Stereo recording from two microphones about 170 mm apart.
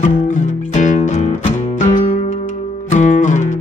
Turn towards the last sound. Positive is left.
turn(degrees=50)  # may be behind; listen again after turning